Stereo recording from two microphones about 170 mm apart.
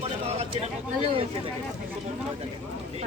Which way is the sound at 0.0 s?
40° right (ahead or behind).